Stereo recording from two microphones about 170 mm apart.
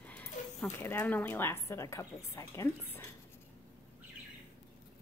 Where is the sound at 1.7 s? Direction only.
15° left (ahead or behind).